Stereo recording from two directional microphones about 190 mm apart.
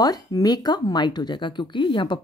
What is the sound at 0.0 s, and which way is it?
Speech, 20° left (ahead or behind).